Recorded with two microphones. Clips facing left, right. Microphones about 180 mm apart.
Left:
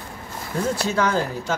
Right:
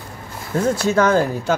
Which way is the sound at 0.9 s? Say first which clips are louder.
Right 8 dB; 45° right (ahead or behind).